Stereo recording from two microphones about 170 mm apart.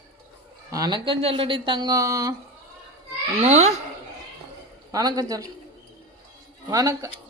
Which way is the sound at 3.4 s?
40° right (ahead or behind).